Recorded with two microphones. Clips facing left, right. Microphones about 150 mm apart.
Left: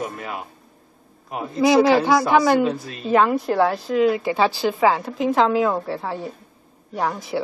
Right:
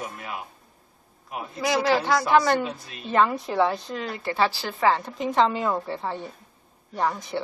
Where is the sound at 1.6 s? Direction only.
20° left (ahead or behind).